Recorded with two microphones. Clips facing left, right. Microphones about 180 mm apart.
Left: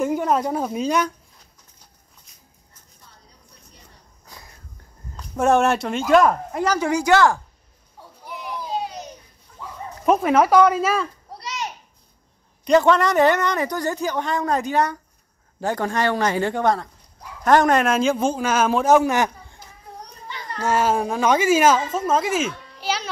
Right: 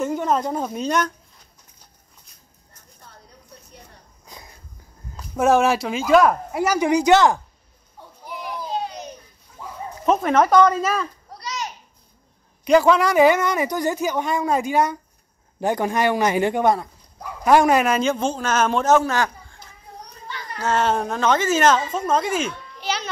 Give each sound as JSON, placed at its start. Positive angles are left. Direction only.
{"t": 0.0, "sound": "a woman's voice", "side_deg": 10}
{"t": 2.3, "sound": "dog", "side_deg": 0}
{"t": 3.1, "sound": "a sound", "side_deg": -60}
{"t": 5.1, "sound": "speech", "side_deg": -5}
{"t": 8.3, "sound": "children playing", "side_deg": 5}
{"t": 10.0, "sound": "speech", "side_deg": 10}
{"t": 11.3, "sound": "a sound", "side_deg": 30}
{"t": 12.6, "sound": "a man's voice", "side_deg": -5}
{"t": 20.6, "sound": "speech", "side_deg": 10}